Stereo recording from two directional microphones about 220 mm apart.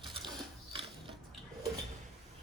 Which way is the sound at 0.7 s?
25° right (ahead or behind).